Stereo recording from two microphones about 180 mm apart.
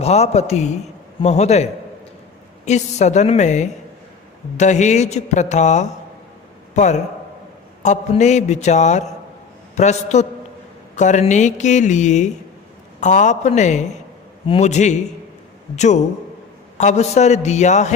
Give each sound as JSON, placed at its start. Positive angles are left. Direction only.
{"t": 0.0, "sound": "speech", "side_deg": 35}
{"t": 2.6, "sound": "speech", "side_deg": 40}